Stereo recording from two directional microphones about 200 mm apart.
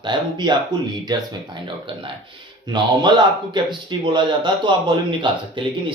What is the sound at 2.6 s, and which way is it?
Speech, 20° right (ahead or behind).